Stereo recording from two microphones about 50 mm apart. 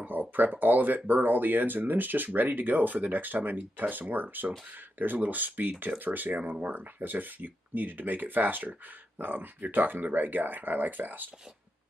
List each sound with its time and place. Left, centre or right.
0.0 s speech: right